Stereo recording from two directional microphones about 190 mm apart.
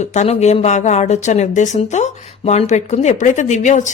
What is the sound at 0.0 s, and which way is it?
Speech, 35° left (ahead or behind).